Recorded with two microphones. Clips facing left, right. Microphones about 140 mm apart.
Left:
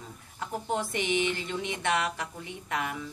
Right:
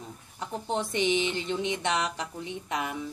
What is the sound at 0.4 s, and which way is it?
A woman's voice, 25° right (ahead or behind).